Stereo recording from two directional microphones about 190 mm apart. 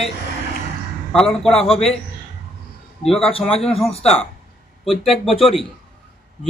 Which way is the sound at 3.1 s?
30° left (ahead or behind).